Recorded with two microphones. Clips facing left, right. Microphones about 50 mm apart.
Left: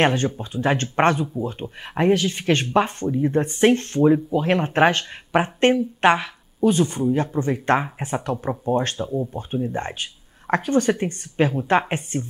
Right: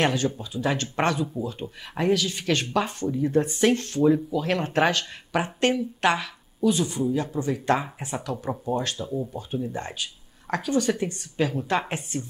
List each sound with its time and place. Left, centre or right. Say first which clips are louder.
0.0 s speech: left 4 dB; left
9.1 s speech: left 4 dB; left